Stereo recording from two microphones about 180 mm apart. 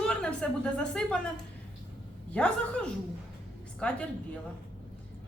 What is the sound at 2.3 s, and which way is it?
A woman's voice, 5° left (ahead or behind).